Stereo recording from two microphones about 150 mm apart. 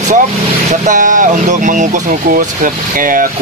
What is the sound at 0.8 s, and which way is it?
Speech, 60° right (ahead or behind).